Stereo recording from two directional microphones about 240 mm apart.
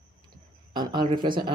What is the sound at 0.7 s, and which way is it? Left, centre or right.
Speech, centre.